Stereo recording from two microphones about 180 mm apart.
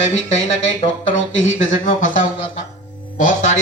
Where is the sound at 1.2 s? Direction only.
90° left.